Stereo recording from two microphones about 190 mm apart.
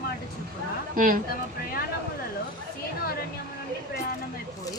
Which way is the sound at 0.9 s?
50° right (ahead or behind).